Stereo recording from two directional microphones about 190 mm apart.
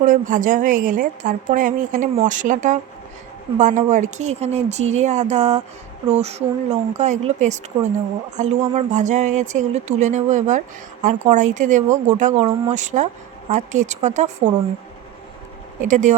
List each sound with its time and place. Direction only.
0.0 s a woman's voice: 45° right (ahead or behind)
15.8 s speech: 40° right (ahead or behind)